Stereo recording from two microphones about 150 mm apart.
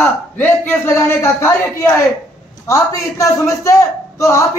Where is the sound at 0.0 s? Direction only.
15° left (ahead or behind).